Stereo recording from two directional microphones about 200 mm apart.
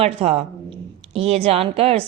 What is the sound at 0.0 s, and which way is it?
A woman's voice, 30° right (ahead or behind).